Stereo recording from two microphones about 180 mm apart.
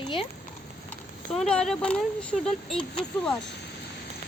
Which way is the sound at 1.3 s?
5° left (ahead or behind).